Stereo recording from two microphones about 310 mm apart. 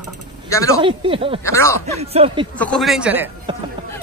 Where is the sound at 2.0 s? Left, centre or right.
Centre.